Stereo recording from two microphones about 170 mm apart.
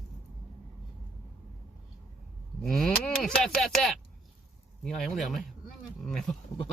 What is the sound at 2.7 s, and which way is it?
Speech, 5° left (ahead or behind).